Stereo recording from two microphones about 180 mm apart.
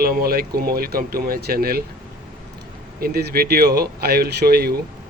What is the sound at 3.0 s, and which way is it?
Speech, 60° right (ahead or behind).